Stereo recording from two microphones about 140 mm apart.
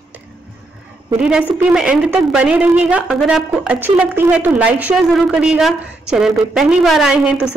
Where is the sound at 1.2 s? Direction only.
5° right (ahead or behind).